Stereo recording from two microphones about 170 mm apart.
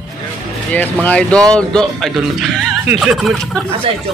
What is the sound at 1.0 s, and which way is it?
Speech, 5° left (ahead or behind).